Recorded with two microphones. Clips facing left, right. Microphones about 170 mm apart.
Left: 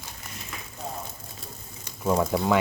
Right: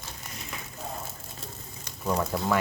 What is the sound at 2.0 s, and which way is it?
Frying, 20° left (ahead or behind).